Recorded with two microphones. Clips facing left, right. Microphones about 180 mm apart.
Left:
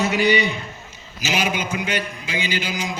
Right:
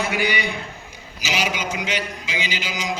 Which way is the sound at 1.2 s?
50° left (ahead or behind).